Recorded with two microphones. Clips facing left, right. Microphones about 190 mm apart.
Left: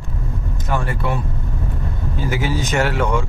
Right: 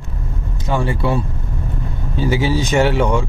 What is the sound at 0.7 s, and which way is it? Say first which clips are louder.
Vehicle: right 4 dB; 25° right (ahead or behind).